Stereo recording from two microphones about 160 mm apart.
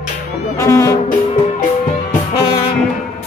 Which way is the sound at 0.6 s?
20° left (ahead or behind).